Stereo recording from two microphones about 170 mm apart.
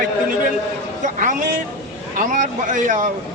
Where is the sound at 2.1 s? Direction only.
50° right (ahead or behind).